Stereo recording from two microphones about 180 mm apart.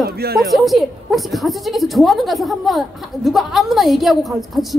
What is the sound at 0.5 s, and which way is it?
A woman's voice, centre (ahead or behind).